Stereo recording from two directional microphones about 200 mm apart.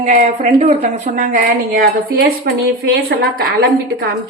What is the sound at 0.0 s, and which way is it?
A woman's voice, 35° right (ahead or behind).